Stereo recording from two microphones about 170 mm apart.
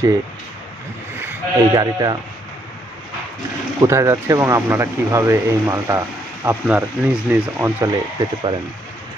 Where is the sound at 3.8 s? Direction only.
15° right (ahead or behind).